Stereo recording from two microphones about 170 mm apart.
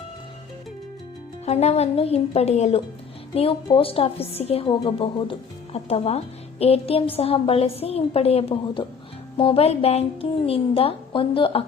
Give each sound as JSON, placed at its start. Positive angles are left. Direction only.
{"t": 1.5, "sound": "a woman's voice", "side_deg": 40}